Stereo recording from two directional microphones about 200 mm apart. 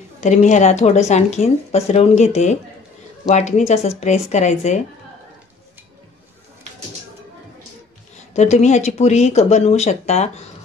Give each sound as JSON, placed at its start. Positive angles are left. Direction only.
{"t": 0.2, "sound": "speech", "side_deg": 35}
{"t": 8.3, "sound": "speech", "side_deg": 35}